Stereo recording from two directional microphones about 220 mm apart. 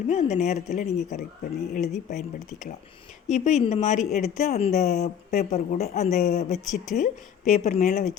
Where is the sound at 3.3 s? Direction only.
30° left (ahead or behind).